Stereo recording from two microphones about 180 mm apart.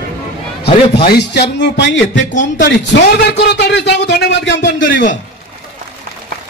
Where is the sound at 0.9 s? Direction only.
65° left (ahead or behind); by 2.6 s 85° left.